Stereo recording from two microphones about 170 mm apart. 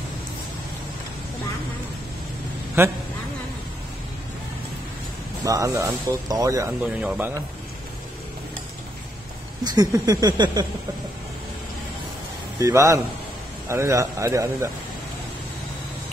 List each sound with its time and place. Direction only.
2.8 s speech: 10° right (ahead or behind)
5.4 s speech: 20° right (ahead or behind)
7.0 s speech: 10° right (ahead or behind)
9.8 s speech: 20° right (ahead or behind)
12.5 s speech: 20° right (ahead or behind)